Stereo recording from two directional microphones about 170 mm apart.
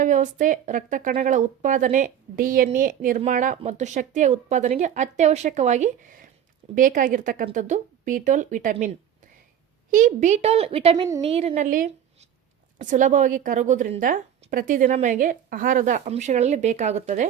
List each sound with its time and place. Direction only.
0.0 s a woman's voice: 50° right (ahead or behind)
9.9 s a woman's voice: 50° right (ahead or behind)